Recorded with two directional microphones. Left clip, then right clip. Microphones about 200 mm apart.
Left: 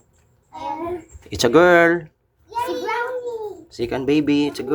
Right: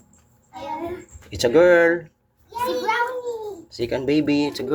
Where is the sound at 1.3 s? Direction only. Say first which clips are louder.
Left 2 dB; 30° left (ahead or behind).